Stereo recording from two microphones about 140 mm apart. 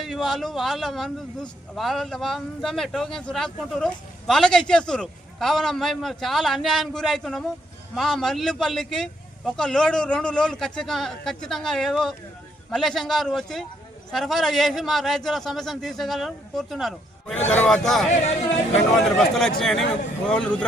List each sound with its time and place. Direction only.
0.0 s a man's voice: centre (ahead or behind)
18.1 s speech: 50° left (ahead or behind)
18.9 s a man's voice: 5° left (ahead or behind)